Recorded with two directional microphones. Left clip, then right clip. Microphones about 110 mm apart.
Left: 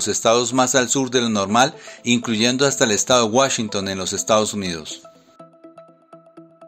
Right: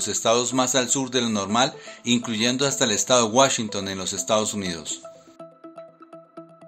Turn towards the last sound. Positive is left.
turn(degrees=30)  # may be behind; listen again after turning